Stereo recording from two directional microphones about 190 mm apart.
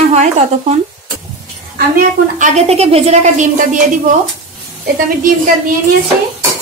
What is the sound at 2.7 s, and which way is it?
A woman's voice, 35° right (ahead or behind).